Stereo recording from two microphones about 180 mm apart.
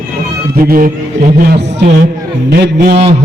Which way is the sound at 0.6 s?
50° right (ahead or behind).